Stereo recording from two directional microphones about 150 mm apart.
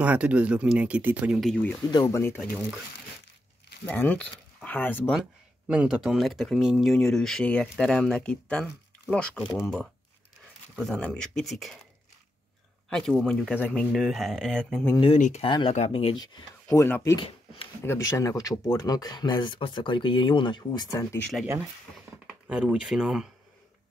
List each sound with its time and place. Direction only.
0.0 s speech: 10° right (ahead or behind)
1.4 s speech: 5° left (ahead or behind)
2.0 s speech: 15° left (ahead or behind)
3.8 s speech: 10° left (ahead or behind)
5.7 s speech: 5° right (ahead or behind)
12.9 s speech: 5° left (ahead or behind)
15.1 s speech: 55° left (ahead or behind)
15.4 s speech: 35° left (ahead or behind)
15.7 s speech: 45° left (ahead or behind)
16.2 s speech: 20° left (ahead or behind)
22.2 s speech: 5° right (ahead or behind)